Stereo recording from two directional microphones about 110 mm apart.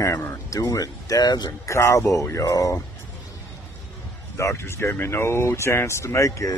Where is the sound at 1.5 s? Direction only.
25° left (ahead or behind).